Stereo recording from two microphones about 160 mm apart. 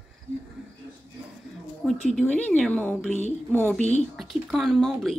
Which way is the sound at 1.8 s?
Centre (ahead or behind).